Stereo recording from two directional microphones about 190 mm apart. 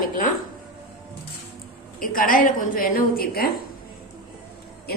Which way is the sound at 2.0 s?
45° left (ahead or behind).